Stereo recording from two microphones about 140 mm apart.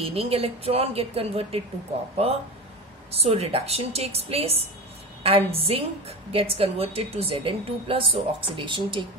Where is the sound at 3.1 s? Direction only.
45° right (ahead or behind).